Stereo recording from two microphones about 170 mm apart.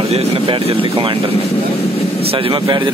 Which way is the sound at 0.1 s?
35° right (ahead or behind).